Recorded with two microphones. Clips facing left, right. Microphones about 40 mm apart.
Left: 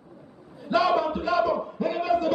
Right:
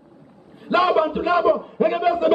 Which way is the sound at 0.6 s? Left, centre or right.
Right.